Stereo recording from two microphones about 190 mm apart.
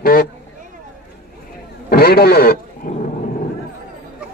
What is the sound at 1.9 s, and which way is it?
Speech, 55° left (ahead or behind).